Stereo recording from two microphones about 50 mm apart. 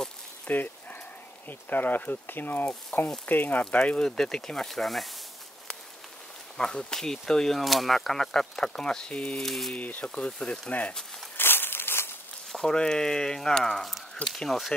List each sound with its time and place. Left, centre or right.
0.5 s dog: left
1.5 s speech: left
4.0 s speech: centre
6.5 s speech: centre
9.4 s speech: centre
9.8 s speech: left
11.3 s a sound: left
12.5 s speech: centre